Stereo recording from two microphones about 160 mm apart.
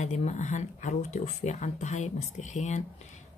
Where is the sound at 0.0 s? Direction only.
45° left (ahead or behind).